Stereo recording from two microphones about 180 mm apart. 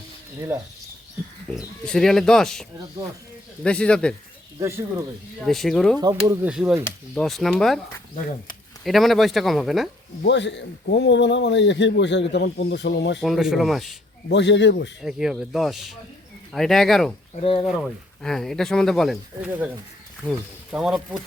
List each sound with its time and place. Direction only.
0.3 s speech: 15° right (ahead or behind)
1.8 s speech: 5° left (ahead or behind)
4.6 s speech: 20° right (ahead or behind)
5.5 s speech: centre (ahead or behind)
6.0 s speech: 20° right (ahead or behind)
6.5 s speech: 5° right (ahead or behind)
8.8 s speech: centre (ahead or behind)
10.2 s a man's voice: 80° left
12.3 s a man's voice: 65° left (ahead or behind)
13.1 s speech: centre (ahead or behind)
14.3 s a man's voice: 75° left (ahead or behind)
15.0 s speech: centre (ahead or behind)
17.3 s speech: 30° left (ahead or behind)
17.7 s speech: 5° left (ahead or behind)